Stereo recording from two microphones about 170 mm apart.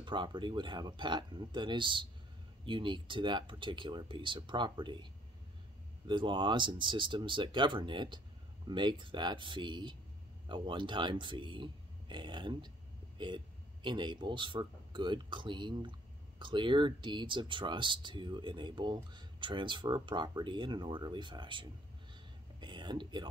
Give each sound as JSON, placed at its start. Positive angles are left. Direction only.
{"t": 0.0, "sound": "speech", "side_deg": -30}
{"t": 6.0, "sound": "speech", "side_deg": -30}
{"t": 22.6, "sound": "a sound", "side_deg": -25}